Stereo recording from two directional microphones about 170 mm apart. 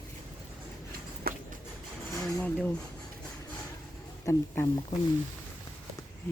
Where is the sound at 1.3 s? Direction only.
65° right (ahead or behind).